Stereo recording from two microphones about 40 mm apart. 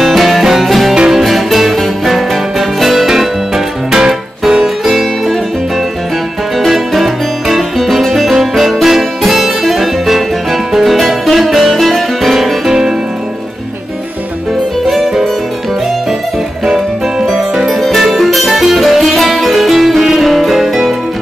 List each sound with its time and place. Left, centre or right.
0.0 s music: centre
0.9 s music: centre
1.2 s music: centre
6.7 s music: centre
12.6 s music: centre
14.9 s music: centre
16.6 s music: centre
17.7 s music: centre